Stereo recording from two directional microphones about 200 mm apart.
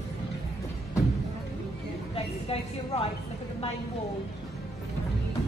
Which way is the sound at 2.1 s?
30° left (ahead or behind).